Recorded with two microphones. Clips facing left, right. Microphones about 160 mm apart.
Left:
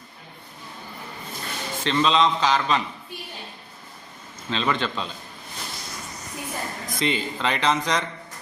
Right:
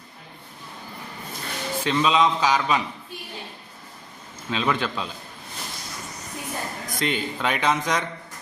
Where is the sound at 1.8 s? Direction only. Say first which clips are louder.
Even; 5° right (ahead or behind).